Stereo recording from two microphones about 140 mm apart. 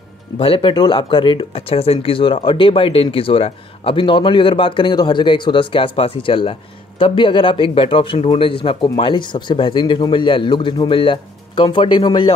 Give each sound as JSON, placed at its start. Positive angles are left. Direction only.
{"t": 0.4, "sound": "speech", "side_deg": 40}